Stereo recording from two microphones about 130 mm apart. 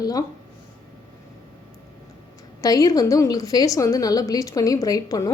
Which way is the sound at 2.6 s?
25° left (ahead or behind).